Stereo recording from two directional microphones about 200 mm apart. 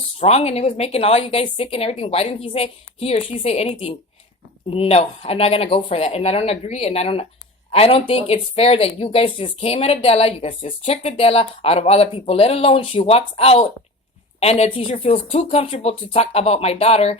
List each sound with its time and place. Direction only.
0.2 s speech: 30° left (ahead or behind)